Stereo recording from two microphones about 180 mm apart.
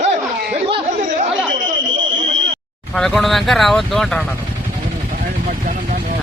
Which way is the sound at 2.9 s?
Centre (ahead or behind).